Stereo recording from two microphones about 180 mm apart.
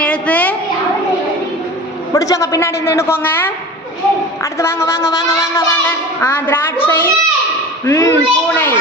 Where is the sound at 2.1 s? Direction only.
20° left (ahead or behind).